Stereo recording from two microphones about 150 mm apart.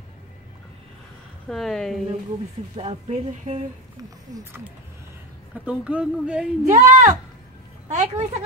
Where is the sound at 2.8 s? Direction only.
45° right (ahead or behind).